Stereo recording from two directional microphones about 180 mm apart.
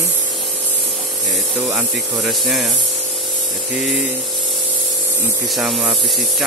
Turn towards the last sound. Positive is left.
turn(degrees=0)  # may be behind; listen again after turning